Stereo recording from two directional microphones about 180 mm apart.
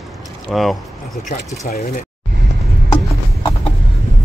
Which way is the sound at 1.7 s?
45° left (ahead or behind).